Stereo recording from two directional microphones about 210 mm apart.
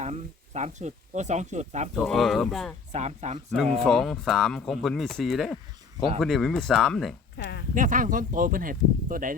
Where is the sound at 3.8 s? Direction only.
Centre (ahead or behind).